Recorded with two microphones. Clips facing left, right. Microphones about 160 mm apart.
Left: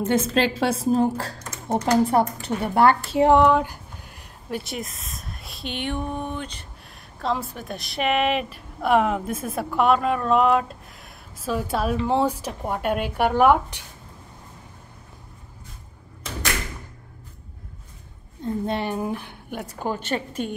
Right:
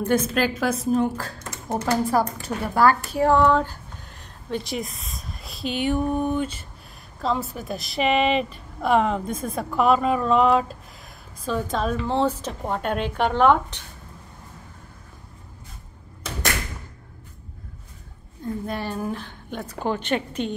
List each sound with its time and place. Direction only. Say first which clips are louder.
0.0 s a woman's voice: left 1 dB; 25° left (ahead or behind)
18.4 s speech: left 3 dB; 20° left (ahead or behind)
20.0 s a woman's voice: right 2 dB; 45° left (ahead or behind)